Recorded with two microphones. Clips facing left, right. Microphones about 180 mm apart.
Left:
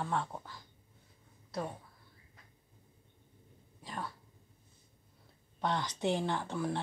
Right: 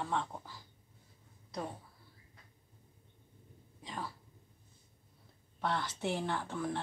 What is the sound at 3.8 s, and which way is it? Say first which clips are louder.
Speech: left 1 dB; centre (ahead or behind).